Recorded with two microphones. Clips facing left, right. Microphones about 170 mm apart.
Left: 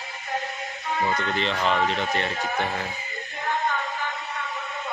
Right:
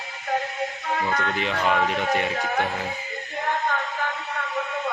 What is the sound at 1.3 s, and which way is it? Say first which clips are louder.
Speech: right 1 dB; 10° right (ahead or behind).